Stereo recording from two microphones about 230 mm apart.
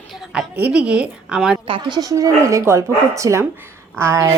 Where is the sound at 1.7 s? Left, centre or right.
Right.